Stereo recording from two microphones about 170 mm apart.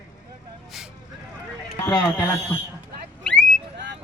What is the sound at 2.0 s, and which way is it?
Speech, 20° left (ahead or behind).